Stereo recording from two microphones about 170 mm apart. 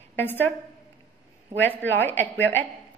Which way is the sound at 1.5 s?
10° left (ahead or behind).